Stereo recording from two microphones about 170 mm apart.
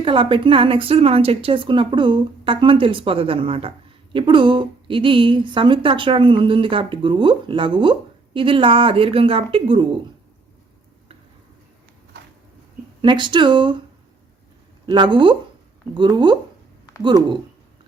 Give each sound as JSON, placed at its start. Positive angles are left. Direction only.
{"t": 0.0, "sound": "a woman's voice", "side_deg": -30}
{"t": 13.0, "sound": "speech", "side_deg": -25}
{"t": 14.8, "sound": "speech", "side_deg": -25}